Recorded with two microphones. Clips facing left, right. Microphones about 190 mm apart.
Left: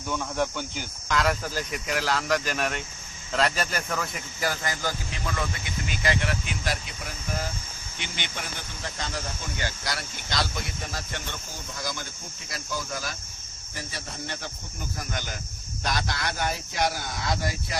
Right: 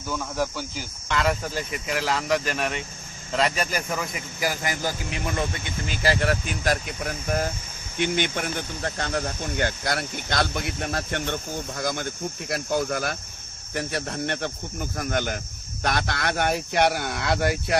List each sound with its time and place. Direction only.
0.1 s speech: centre (ahead or behind); by 5.5 s 20° right (ahead or behind)
6.0 s speech: 40° right (ahead or behind); by 17.7 s 65° right (ahead or behind)